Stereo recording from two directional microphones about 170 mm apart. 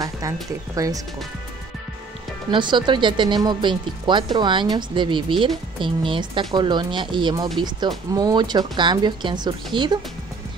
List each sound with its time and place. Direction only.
0.7 s speech: 20° right (ahead or behind)
2.5 s speech: 25° right (ahead or behind)